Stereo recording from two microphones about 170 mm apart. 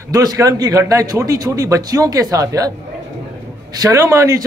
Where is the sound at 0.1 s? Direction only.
20° right (ahead or behind).